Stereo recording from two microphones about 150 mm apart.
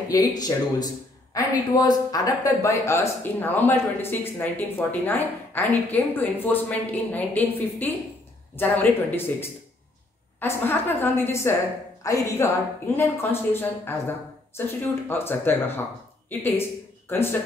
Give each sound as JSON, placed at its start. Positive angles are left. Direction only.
{"t": 0.1, "sound": "speech", "side_deg": 25}